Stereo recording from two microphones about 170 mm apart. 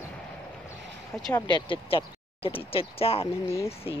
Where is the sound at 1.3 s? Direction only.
25° left (ahead or behind).